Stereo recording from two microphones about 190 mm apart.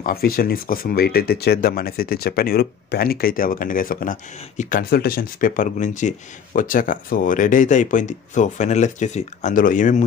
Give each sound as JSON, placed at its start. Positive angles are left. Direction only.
{"t": 0.0, "sound": "speech", "side_deg": 50}